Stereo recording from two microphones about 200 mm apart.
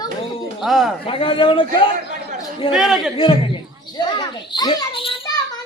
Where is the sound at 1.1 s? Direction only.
25° left (ahead or behind).